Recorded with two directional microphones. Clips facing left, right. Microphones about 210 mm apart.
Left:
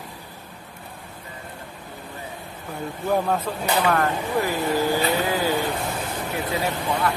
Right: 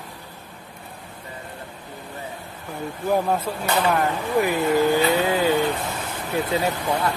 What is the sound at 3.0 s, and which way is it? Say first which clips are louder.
Speech: right 1 dB; 10° right (ahead or behind).